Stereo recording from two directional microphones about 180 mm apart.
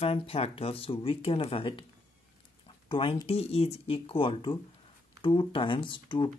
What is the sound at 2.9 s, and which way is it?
Speech, 30° left (ahead or behind).